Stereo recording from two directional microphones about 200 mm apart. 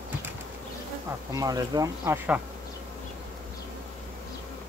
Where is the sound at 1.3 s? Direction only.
20° right (ahead or behind).